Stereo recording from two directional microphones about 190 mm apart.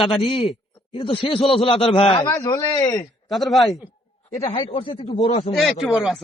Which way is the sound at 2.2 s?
15° left (ahead or behind).